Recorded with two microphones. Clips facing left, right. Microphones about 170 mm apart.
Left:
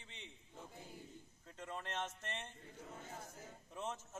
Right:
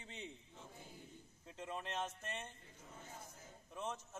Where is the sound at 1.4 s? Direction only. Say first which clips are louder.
Right 1 dB; 15° right (ahead or behind).